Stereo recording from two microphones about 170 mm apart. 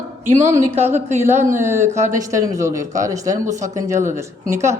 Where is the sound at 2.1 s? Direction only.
20° right (ahead or behind).